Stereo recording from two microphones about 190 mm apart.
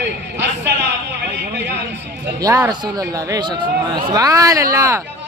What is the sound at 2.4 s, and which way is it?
A man's voice, 20° right (ahead or behind).